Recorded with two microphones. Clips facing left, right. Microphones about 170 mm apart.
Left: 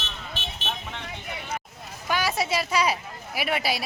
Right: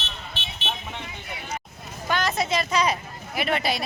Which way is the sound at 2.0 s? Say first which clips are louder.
Right 1 dB; 10° left (ahead or behind).